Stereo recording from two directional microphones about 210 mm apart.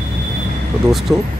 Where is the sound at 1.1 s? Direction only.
15° right (ahead or behind).